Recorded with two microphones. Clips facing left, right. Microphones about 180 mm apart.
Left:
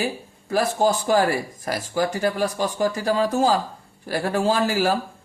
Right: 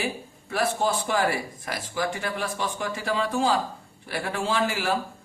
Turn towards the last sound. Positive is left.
turn(degrees=40)  # may be behind; listen again after turning